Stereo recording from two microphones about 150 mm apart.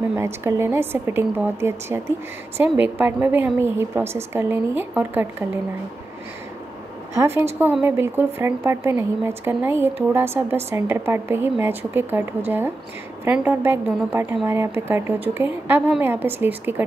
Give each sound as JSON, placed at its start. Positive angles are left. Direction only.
{"t": 0.1, "sound": "a woman's voice", "side_deg": -15}
{"t": 7.2, "sound": "a woman's voice", "side_deg": -15}